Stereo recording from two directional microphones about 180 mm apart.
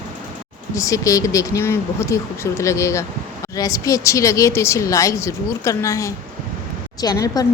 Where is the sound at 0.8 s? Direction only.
20° left (ahead or behind).